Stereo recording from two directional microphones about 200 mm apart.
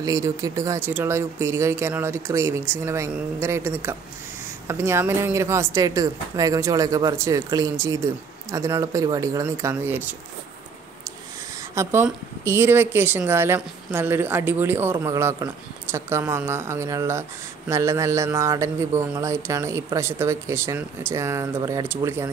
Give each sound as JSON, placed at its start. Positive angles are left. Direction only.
{"t": 0.0, "sound": "speech", "side_deg": -15}
{"t": 11.7, "sound": "speech", "side_deg": -10}